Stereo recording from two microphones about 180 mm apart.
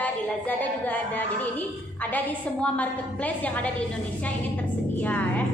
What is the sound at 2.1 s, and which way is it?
Speech, 10° left (ahead or behind).